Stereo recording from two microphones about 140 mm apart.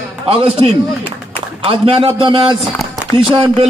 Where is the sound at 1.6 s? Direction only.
40° right (ahead or behind).